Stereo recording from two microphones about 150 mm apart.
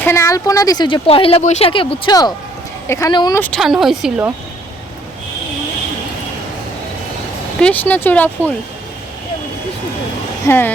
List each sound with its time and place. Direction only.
0.0 s speech: 20° left (ahead or behind); by 2.1 s 35° left (ahead or behind)
2.8 s speech: 20° left (ahead or behind)
3.1 s speech: 30° left (ahead or behind)
3.3 s speech: 10° left (ahead or behind)
3.6 s speech: centre (ahead or behind)
7.6 s speech: 10° left (ahead or behind)
10.4 s speech: 15° left (ahead or behind)